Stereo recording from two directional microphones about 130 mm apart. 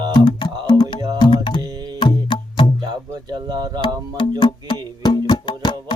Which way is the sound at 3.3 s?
35° right (ahead or behind).